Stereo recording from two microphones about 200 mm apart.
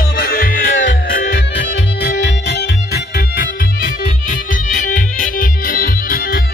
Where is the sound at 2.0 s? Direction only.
60° left (ahead or behind).